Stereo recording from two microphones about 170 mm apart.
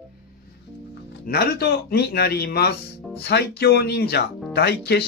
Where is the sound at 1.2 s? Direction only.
65° left (ahead or behind).